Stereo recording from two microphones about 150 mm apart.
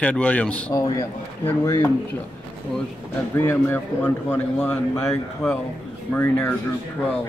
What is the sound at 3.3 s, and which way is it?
A man's voice, 15° left (ahead or behind).